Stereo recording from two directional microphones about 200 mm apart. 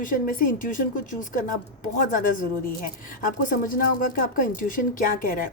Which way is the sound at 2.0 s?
40° left (ahead or behind).